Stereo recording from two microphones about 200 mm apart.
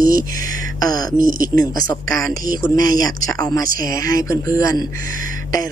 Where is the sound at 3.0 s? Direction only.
15° left (ahead or behind).